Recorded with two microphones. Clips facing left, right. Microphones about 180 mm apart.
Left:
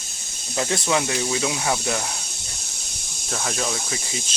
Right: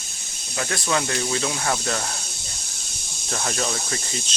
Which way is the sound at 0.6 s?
20° left (ahead or behind).